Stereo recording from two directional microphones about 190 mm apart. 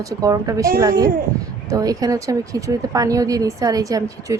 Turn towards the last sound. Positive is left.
turn(degrees=-20)  # may be behind; listen again after turning